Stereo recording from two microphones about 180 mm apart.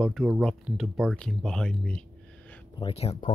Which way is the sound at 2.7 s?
35° left (ahead or behind).